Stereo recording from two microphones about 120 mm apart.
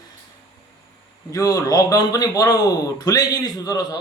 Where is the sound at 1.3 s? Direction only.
30° left (ahead or behind).